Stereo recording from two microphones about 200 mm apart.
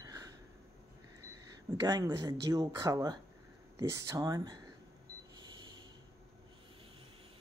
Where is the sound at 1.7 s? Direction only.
20° right (ahead or behind).